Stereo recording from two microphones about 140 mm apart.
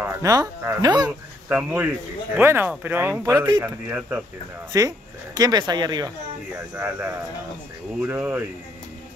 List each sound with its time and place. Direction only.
0.0 s speech: 25° right (ahead or behind)
1.5 s speech: 10° right (ahead or behind)
4.7 s speech: 25° right (ahead or behind)
6.7 s speech: 15° right (ahead or behind)